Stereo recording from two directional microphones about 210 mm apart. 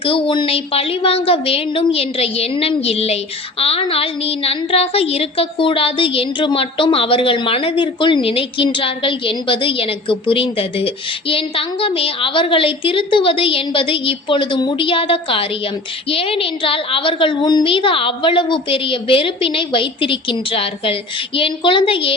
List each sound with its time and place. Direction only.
0.0 s a woman's voice: 25° left (ahead or behind)